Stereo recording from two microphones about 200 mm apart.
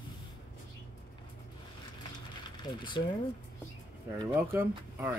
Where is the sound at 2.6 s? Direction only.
20° left (ahead or behind).